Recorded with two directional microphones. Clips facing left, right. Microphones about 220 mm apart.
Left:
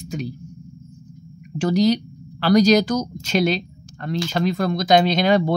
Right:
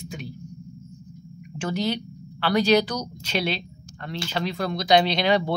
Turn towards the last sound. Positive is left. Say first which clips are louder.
# left 4 dB
turn(degrees=45)  # may be behind; listen again after turning